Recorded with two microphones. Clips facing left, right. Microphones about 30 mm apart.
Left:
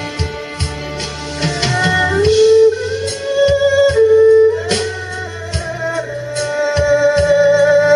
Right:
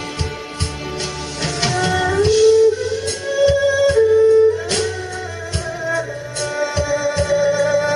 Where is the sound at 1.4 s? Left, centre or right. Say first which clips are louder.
Left 3 dB; centre.